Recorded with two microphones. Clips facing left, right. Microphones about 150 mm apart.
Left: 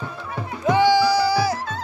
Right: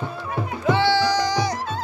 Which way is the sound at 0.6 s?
15° left (ahead or behind).